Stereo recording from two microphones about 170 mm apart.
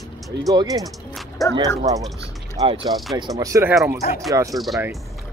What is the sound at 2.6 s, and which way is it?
Speech, 30° right (ahead or behind).